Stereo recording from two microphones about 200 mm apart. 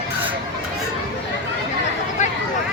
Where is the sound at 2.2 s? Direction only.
35° left (ahead or behind).